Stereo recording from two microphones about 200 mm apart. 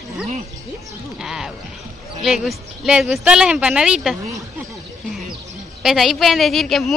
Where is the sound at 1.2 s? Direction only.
Centre (ahead or behind).